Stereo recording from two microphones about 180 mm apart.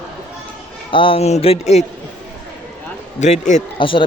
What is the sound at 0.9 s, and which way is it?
Speech, 30° left (ahead or behind).